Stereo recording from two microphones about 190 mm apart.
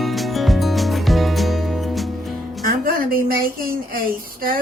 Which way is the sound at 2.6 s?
50° right (ahead or behind).